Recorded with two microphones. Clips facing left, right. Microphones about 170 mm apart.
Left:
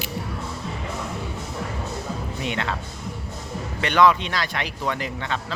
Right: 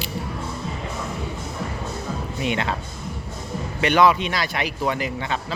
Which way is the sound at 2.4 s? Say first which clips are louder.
Right 3 dB; 15° right (ahead or behind).